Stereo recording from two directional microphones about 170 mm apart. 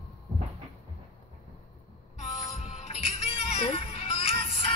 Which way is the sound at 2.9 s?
35° left (ahead or behind).